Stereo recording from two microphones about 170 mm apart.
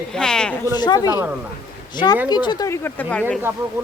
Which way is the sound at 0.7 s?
25° left (ahead or behind).